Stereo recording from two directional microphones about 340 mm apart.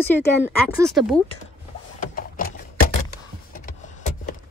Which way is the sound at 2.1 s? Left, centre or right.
Left.